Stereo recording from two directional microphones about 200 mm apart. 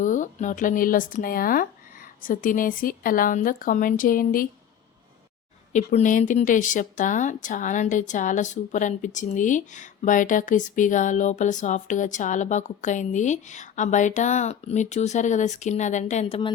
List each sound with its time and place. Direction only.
0.0 s speech: 40° left (ahead or behind)
5.7 s speech: 35° left (ahead or behind)